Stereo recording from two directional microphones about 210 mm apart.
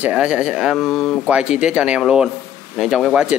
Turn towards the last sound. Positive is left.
turn(degrees=-5)  # may be behind; listen again after turning